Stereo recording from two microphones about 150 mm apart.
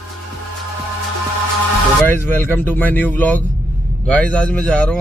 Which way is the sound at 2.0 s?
15° left (ahead or behind).